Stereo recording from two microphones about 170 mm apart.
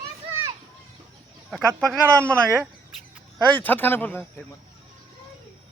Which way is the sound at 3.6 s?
10° left (ahead or behind).